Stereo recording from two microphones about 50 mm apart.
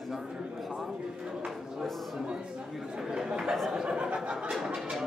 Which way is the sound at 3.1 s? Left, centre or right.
Centre.